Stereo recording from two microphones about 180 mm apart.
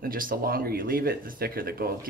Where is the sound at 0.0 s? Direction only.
50° right (ahead or behind).